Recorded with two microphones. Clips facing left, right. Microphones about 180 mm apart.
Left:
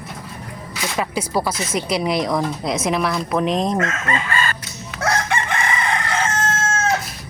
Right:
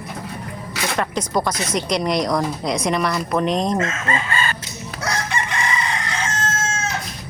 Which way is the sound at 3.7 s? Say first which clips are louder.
Even; 25° right (ahead or behind).